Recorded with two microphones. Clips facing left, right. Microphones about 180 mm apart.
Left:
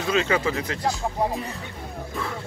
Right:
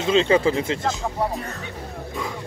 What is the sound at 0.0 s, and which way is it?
Speech, 25° right (ahead or behind).